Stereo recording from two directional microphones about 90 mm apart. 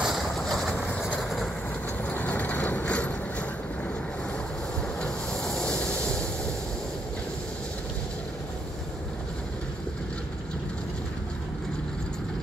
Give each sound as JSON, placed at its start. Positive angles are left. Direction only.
{"t": 0.0, "sound": "vehicle", "side_deg": 0}
{"t": 2.0, "sound": "vehicle", "side_deg": 15}
{"t": 5.0, "sound": "rub", "side_deg": 5}